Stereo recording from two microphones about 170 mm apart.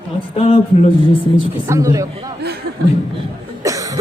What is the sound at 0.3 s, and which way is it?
Speech, 35° left (ahead or behind).